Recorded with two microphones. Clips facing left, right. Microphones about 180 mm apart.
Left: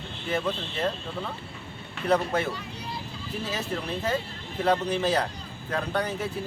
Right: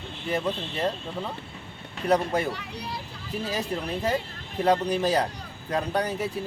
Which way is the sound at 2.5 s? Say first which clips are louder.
Right 1 dB; 70° right (ahead or behind).